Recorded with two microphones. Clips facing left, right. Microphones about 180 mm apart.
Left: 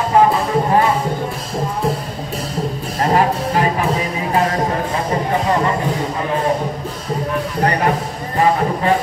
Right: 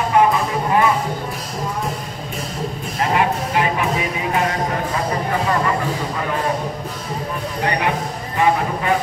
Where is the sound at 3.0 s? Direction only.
40° left (ahead or behind).